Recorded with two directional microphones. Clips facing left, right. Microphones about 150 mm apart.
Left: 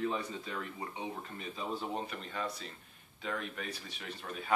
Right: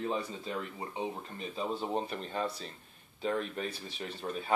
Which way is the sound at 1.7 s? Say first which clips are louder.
Right 4 dB; 35° right (ahead or behind).